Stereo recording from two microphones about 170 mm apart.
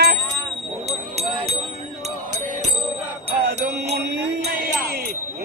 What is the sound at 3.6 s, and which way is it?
Music, 75° right (ahead or behind).